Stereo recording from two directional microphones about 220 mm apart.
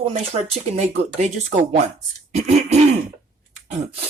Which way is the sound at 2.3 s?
30° right (ahead or behind).